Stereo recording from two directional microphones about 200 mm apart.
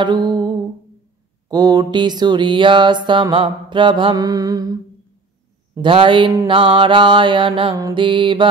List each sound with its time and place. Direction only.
0.0 s music: 20° right (ahead or behind)
1.5 s music: 20° right (ahead or behind)
5.8 s music: 25° right (ahead or behind)